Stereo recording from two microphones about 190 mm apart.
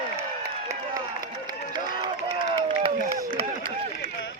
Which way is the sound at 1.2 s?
20° right (ahead or behind).